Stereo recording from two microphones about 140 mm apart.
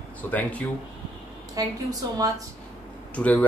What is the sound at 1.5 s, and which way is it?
Speech, 25° right (ahead or behind).